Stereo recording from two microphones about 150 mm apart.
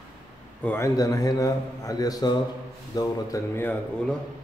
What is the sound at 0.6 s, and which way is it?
A man's voice, 15° left (ahead or behind).